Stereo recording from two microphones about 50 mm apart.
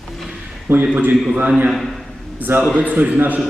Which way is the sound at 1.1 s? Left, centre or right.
Centre.